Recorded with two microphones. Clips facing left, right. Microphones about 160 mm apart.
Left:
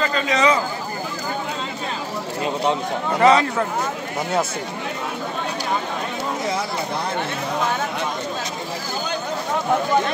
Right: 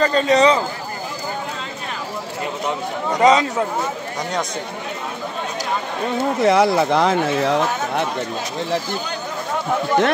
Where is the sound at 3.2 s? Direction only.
15° right (ahead or behind).